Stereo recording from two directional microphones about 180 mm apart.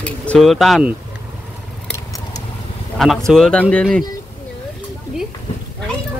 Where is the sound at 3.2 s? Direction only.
5° left (ahead or behind).